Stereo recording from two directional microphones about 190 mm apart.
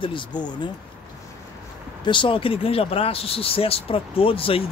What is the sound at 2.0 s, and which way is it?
Speech, 25° left (ahead or behind).